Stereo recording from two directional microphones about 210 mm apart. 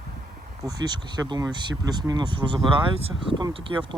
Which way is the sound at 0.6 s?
20° right (ahead or behind).